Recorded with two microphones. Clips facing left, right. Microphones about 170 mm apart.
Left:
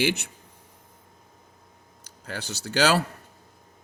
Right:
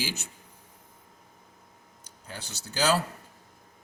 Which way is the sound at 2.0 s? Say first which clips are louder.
Left 7 dB; 85° left.